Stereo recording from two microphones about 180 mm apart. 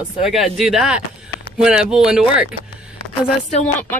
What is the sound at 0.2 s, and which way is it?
Speech, centre (ahead or behind).